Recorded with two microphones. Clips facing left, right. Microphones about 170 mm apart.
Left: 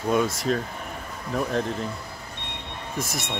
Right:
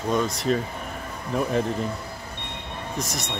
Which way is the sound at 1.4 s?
5° right (ahead or behind).